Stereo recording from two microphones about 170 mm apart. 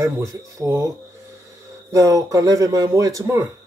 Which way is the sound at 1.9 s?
20° right (ahead or behind).